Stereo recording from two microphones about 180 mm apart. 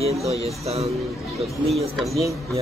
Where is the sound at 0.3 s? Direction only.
35° right (ahead or behind).